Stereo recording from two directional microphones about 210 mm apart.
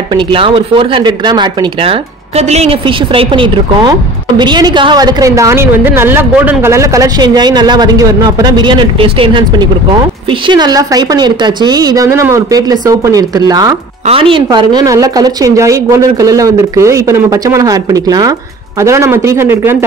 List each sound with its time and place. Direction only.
0.1 s a woman's voice: 25° right (ahead or behind)
10.5 s a woman's voice: 20° right (ahead or behind)